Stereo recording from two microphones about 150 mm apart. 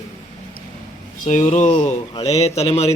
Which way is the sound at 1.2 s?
50° left (ahead or behind).